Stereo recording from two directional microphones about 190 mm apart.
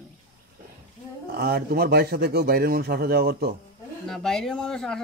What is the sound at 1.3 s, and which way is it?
Speech, 55° right (ahead or behind).